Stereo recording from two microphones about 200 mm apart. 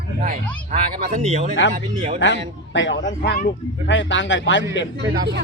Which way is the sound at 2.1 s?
65° left (ahead or behind).